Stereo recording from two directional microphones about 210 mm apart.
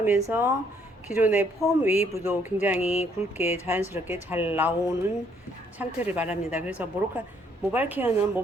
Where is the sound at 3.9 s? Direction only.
10° right (ahead or behind).